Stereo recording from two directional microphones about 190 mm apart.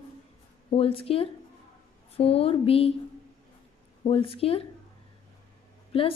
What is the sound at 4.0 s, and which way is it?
Speech, 30° left (ahead or behind).